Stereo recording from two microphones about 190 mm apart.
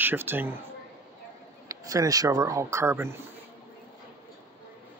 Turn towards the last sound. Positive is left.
turn(degrees=-15)  # may be behind; listen again after turning